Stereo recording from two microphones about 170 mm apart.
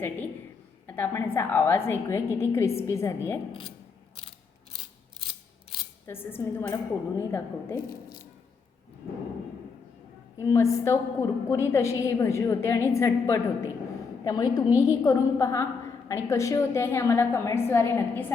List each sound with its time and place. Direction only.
0.9 s a woman's voice: 10° left (ahead or behind)
6.1 s a woman's voice: 15° left (ahead or behind)
10.4 s a woman's voice: 20° left (ahead or behind)